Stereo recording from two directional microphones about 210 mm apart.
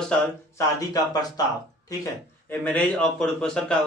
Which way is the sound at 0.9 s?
20° left (ahead or behind).